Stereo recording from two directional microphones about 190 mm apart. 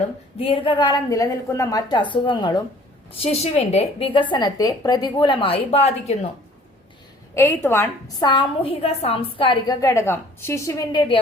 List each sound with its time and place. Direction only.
0.3 s a woman's voice: 30° left (ahead or behind)
3.4 s a woman's voice: 35° left (ahead or behind)
7.3 s a woman's voice: 10° left (ahead or behind)